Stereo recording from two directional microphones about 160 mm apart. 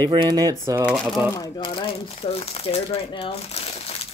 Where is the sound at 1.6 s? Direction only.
30° left (ahead or behind).